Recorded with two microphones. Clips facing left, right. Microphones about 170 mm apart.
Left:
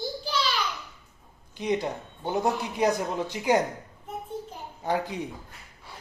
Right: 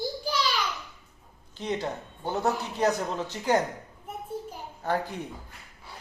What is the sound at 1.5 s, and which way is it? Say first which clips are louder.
Speech: left 3 dB; 15° left (ahead or behind).